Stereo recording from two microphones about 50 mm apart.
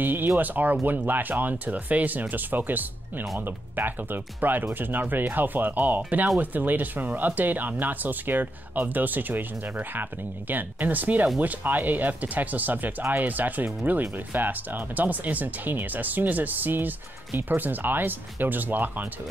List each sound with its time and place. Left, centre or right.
0.0 s speech: right